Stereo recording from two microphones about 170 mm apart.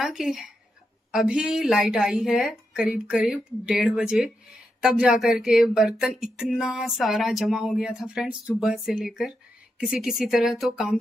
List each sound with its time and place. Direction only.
0.0 s speech: centre (ahead or behind)